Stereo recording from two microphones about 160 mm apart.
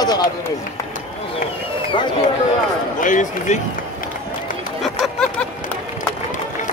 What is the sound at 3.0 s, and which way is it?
Speech, 50° left (ahead or behind).